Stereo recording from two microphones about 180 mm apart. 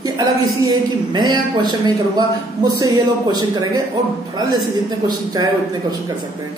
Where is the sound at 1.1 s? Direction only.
25° right (ahead or behind).